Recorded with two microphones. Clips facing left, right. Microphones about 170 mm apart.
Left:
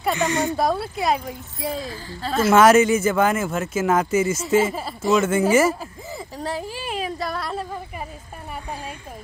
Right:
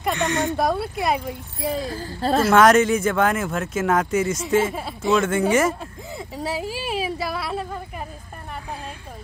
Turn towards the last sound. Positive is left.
turn(degrees=-5)  # may be behind; listen again after turning